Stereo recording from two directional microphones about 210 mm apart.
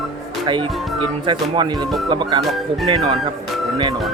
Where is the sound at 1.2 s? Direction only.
20° right (ahead or behind).